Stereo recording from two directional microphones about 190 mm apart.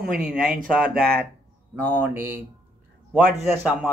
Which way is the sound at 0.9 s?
55° right (ahead or behind).